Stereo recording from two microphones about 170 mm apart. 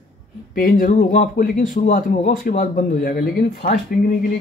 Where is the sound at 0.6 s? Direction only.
55° left (ahead or behind).